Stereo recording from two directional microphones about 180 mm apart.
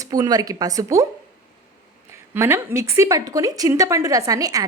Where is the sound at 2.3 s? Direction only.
15° right (ahead or behind).